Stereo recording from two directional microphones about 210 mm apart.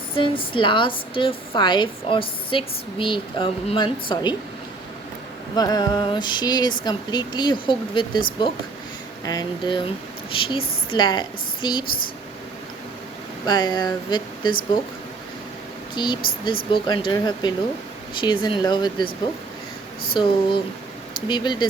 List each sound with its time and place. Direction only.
0.2 s speech: 25° left (ahead or behind)
5.5 s speech: 20° left (ahead or behind)
13.4 s speech: 20° left (ahead or behind)
16.0 s speech: 20° left (ahead or behind)
20.2 s speech: 20° left (ahead or behind)